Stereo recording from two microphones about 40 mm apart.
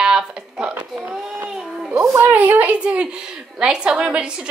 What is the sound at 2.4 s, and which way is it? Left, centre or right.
Speech, right.